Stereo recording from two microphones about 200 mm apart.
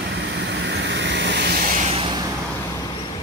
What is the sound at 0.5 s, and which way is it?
Vehicle, 60° right (ahead or behind).